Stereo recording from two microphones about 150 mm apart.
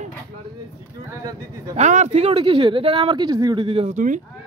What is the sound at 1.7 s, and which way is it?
A man's voice, 50° right (ahead or behind).